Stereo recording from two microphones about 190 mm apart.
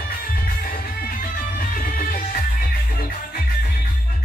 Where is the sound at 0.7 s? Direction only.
45° left (ahead or behind).